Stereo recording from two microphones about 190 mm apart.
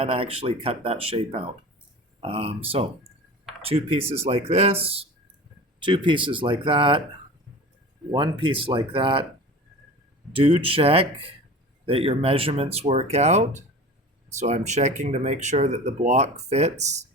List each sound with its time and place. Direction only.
0.0 s speech: 30° right (ahead or behind)
3.6 s speech: 30° right (ahead or behind)
8.1 s speech: 25° right (ahead or behind)
10.3 s speech: 30° right (ahead or behind)